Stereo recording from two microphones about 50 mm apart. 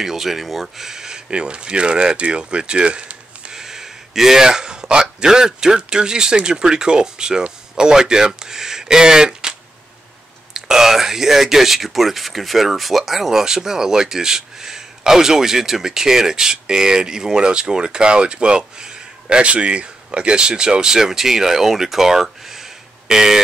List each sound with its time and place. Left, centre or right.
0.0 s speech: centre
3.6 s a sound: centre
5.2 s speech: centre